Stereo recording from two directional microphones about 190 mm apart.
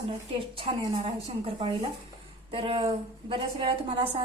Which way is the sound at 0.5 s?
30° right (ahead or behind).